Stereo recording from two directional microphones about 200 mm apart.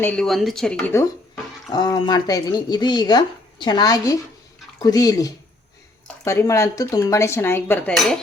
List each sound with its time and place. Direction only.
0.0 s speech: 5° left (ahead or behind)
1.7 s speech: 20° left (ahead or behind)
4.8 s cutlery: 20° left (ahead or behind)